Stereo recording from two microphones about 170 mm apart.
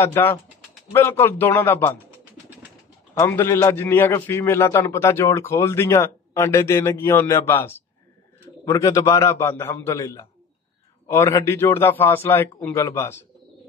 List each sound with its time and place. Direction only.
0.0 s a man's voice: 15° left (ahead or behind)
3.2 s a man's voice: 15° left (ahead or behind)